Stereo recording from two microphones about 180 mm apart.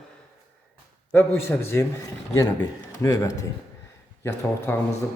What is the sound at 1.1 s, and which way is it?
Speech, 15° left (ahead or behind).